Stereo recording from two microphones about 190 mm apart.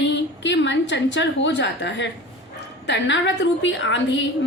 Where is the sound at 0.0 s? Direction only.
70° left (ahead or behind).